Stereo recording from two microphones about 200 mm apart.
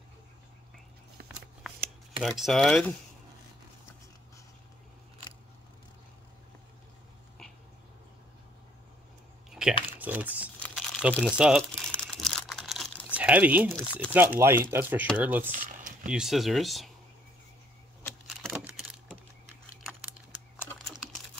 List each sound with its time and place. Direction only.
1.6 s shuffling cards: centre (ahead or behind)
2.2 s speech: centre (ahead or behind)
9.5 s a sound: 5° right (ahead or behind)
9.8 s speech: 10° right (ahead or behind)
11.0 s crumpling: 5° right (ahead or behind)
14.1 s speech: 10° right (ahead or behind)
15.5 s a sound: 40° right (ahead or behind)
16.1 s speech: centre (ahead or behind)
18.2 s a sound: 5° right (ahead or behind)